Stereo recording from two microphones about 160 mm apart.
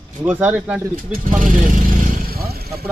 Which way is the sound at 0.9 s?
55° right (ahead or behind).